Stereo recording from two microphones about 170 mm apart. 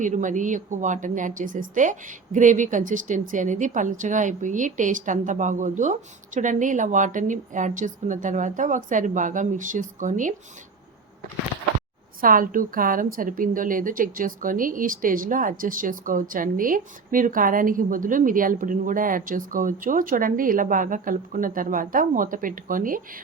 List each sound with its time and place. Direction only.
0.0 s a woman's voice: 50° right (ahead or behind)
12.2 s a woman's voice: 55° right (ahead or behind)